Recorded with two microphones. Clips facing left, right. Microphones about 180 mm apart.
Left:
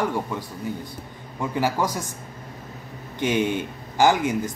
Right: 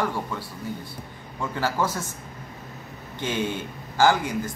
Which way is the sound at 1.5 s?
15° left (ahead or behind).